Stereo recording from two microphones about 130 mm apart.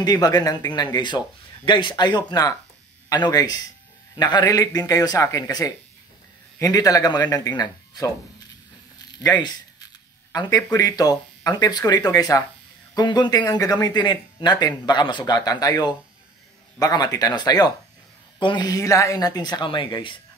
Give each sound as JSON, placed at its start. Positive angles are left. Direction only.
{"t": 0.0, "sound": "a man's voice", "side_deg": 30}
{"t": 10.3, "sound": "a man's voice", "side_deg": 30}